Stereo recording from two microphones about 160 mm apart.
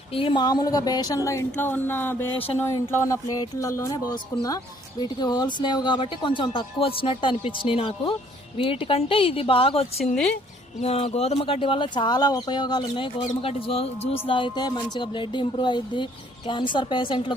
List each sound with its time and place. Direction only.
0.1 s speech: 35° left (ahead or behind)